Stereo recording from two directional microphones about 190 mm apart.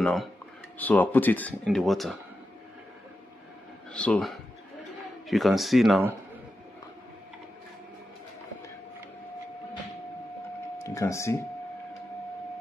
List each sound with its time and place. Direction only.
0.0 s a man's voice: centre (ahead or behind)
3.9 s a man's voice: 5° left (ahead or behind)
11.0 s speech: 15° left (ahead or behind)